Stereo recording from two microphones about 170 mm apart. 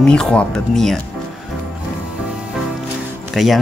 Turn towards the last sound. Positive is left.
turn(degrees=0)  # may be behind; listen again after turning